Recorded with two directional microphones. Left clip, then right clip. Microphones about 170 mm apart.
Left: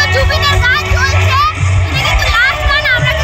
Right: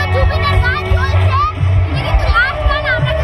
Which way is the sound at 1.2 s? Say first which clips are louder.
Left 3 dB; centre (ahead or behind).